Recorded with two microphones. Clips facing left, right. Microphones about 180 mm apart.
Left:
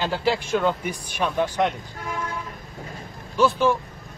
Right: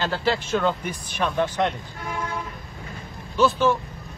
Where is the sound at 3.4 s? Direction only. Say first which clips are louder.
Even; 10° left (ahead or behind).